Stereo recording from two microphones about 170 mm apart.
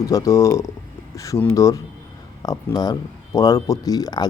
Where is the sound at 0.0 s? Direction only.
20° left (ahead or behind).